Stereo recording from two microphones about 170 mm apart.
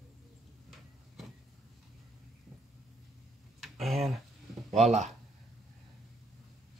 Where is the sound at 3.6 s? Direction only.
Centre (ahead or behind).